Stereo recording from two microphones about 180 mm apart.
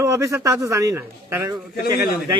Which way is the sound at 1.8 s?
55° left (ahead or behind).